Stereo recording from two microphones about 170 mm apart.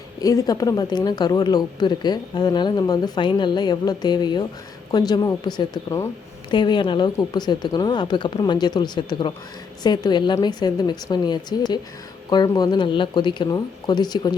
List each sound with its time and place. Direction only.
0.2 s speech: 20° left (ahead or behind)